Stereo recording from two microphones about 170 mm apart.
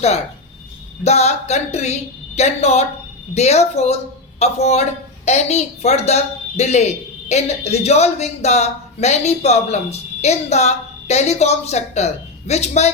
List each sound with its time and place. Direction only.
1.0 s a woman's voice: 40° left (ahead or behind)